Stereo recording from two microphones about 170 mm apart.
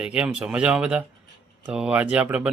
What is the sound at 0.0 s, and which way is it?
Speech, 5° right (ahead or behind).